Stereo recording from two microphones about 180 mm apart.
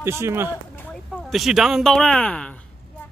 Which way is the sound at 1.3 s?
Centre (ahead or behind).